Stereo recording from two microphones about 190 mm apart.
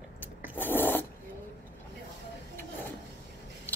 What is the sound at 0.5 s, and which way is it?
Zipper, 10° left (ahead or behind).